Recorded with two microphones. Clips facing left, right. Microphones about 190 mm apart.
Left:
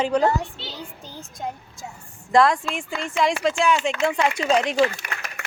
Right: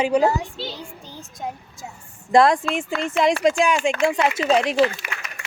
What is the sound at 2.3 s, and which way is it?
A woman's voice, 15° right (ahead or behind).